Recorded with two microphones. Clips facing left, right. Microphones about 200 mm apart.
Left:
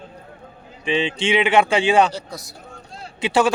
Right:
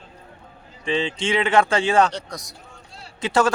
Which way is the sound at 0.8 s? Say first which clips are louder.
Left 2 dB; 20° left (ahead or behind).